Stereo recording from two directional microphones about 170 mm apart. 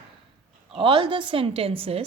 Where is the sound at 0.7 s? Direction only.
30° right (ahead or behind).